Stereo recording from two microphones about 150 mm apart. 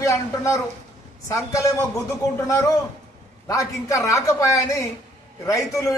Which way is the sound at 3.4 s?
20° left (ahead or behind).